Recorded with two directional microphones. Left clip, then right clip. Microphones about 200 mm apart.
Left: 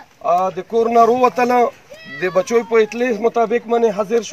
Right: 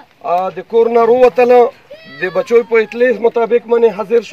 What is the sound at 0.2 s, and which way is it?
A man's voice, 5° left (ahead or behind).